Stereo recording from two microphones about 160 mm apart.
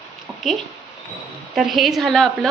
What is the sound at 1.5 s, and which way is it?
Speech, centre (ahead or behind).